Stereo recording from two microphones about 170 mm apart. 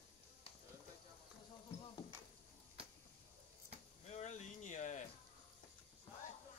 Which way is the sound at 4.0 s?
45° left (ahead or behind).